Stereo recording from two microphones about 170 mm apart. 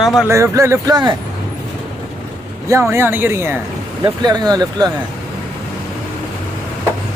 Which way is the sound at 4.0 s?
25° right (ahead or behind).